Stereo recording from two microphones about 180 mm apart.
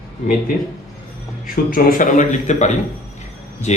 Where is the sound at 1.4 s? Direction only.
55° left (ahead or behind); by 3.8 s 35° left (ahead or behind).